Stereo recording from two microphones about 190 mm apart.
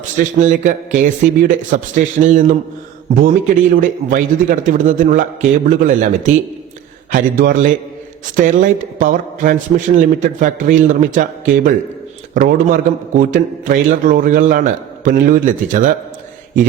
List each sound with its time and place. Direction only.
0.3 s a man's voice: 40° right (ahead or behind)
3.8 s a man's voice: 45° right (ahead or behind)